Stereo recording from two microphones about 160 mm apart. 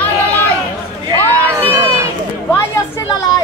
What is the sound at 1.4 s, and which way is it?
Crowd, 15° right (ahead or behind).